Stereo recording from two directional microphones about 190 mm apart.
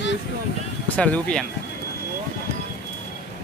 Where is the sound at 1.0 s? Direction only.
5° left (ahead or behind).